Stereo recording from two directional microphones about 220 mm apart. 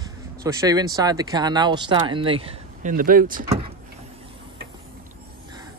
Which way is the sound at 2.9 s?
40° right (ahead or behind).